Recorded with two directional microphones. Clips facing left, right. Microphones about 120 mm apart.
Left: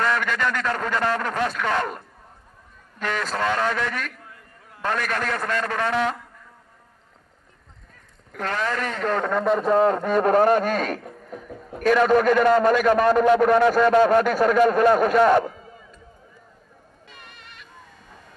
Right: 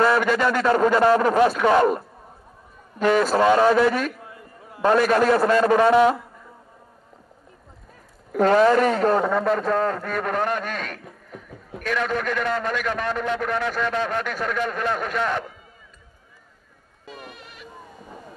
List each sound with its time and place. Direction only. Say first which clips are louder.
0.0 s a man's voice: right 5 dB; 10° right (ahead or behind)
3.0 s a man's voice: right 8 dB; 15° right (ahead or behind)
8.3 s speech: right 10 dB; 25° right (ahead or behind)
9.1 s speech: right 1 dB; 5° right (ahead or behind)
9.7 s a man's voice: left 4 dB; 20° left (ahead or behind); by 15.5 s 40° left (ahead or behind)
17.0 s bleat: right 8 dB; 5° right (ahead or behind)